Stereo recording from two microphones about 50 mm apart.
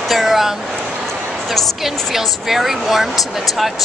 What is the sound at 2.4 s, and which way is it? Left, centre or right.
Speech, centre.